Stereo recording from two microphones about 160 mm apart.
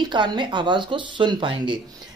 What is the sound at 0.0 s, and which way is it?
Speech, 25° right (ahead or behind).